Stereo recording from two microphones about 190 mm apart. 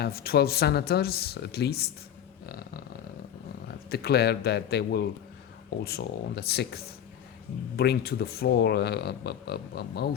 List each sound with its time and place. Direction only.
0.0 s speech: 55° left (ahead or behind)
2.5 s purr: 55° left (ahead or behind)
3.7 s speech: 55° left (ahead or behind)